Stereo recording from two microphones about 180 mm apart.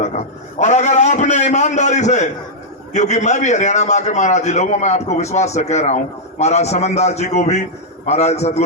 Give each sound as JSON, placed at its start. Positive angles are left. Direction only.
{"t": 0.6, "sound": "a man's voice", "side_deg": 40}